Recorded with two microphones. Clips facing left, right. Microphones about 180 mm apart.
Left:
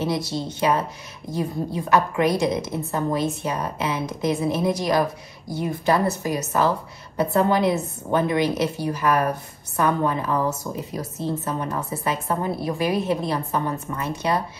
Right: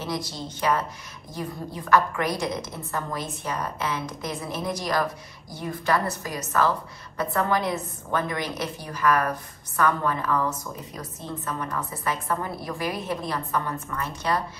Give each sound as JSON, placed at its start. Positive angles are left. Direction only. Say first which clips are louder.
{"t": 0.3, "sound": "a woman's voice", "louder": "left 4 dB", "side_deg": 25}